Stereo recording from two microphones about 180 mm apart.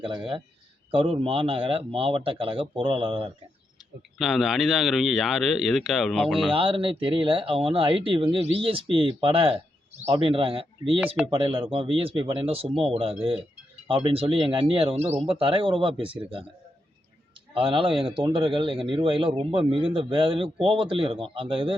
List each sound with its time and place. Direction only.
0.0 s speech: 30° right (ahead or behind)
4.2 s speech: centre (ahead or behind)
6.5 s speech: 30° right (ahead or behind)
17.5 s speech: 30° right (ahead or behind)